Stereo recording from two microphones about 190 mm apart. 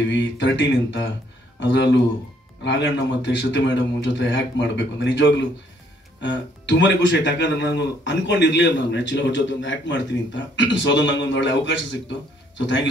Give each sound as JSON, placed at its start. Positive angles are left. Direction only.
{"t": 0.0, "sound": "speech", "side_deg": 70}